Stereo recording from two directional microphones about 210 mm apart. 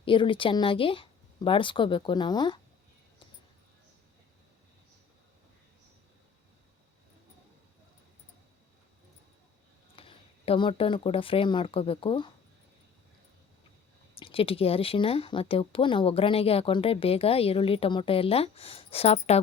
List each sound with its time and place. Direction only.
0.0 s speech: 25° left (ahead or behind)
9.9 s speech: 25° left (ahead or behind)
14.2 s speech: 25° left (ahead or behind)